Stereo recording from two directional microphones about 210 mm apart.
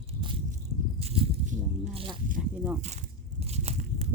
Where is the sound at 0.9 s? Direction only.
30° right (ahead or behind).